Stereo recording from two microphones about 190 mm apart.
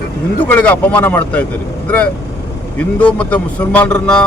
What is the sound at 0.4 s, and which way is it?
Speech, 10° left (ahead or behind).